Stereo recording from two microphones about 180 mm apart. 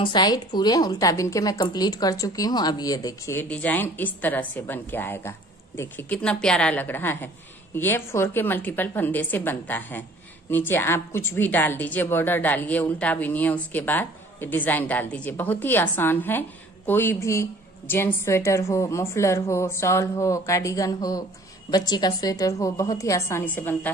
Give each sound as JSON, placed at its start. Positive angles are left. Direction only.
{"t": 0.0, "sound": "a woman's voice", "side_deg": 25}